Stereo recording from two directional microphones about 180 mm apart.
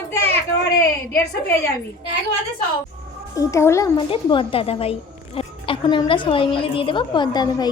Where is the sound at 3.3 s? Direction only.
15° left (ahead or behind).